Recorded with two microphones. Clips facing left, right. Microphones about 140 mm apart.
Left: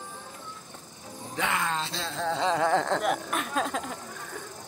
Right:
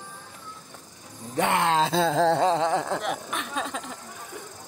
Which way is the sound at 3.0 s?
Centre (ahead or behind).